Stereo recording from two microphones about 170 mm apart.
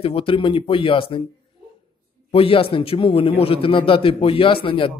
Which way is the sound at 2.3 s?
35° left (ahead or behind).